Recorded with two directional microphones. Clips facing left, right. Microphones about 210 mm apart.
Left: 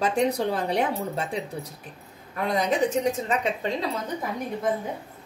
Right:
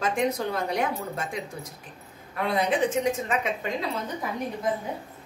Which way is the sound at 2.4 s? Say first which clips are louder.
Left 1 dB; 40° left (ahead or behind).